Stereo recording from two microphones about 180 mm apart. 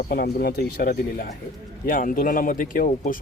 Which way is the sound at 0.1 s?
55° left (ahead or behind).